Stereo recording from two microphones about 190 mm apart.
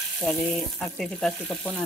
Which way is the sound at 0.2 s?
5° left (ahead or behind).